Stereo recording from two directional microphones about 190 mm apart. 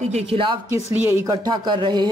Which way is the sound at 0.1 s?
30° right (ahead or behind).